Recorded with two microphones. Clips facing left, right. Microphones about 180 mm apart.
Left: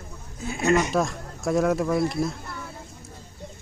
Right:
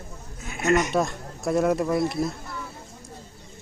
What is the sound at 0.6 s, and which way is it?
Speech, 30° left (ahead or behind).